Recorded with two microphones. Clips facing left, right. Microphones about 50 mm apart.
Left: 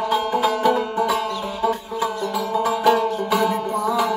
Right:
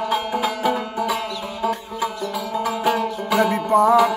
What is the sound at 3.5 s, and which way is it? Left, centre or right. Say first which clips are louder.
Music: right 6 dB; right.